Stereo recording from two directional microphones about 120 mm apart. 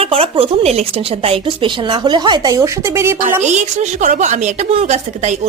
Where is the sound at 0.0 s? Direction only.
50° right (ahead or behind).